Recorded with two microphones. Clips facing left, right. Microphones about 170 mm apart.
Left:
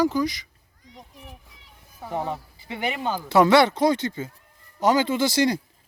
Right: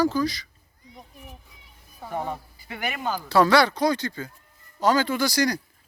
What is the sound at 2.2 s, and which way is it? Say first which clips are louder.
Speech: left 2 dB; 20° left (ahead or behind).